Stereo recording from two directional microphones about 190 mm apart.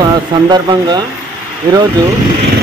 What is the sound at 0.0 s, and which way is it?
Speech, 20° right (ahead or behind).